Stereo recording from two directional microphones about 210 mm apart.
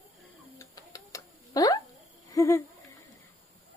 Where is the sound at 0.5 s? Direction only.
15° left (ahead or behind).